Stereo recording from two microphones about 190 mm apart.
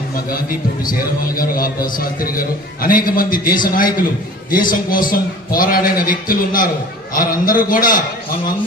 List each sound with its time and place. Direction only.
0.3 s speech: 50° left (ahead or behind)